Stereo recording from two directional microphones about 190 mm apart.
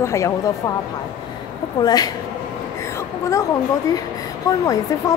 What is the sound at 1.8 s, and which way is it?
Speech, 20° left (ahead or behind).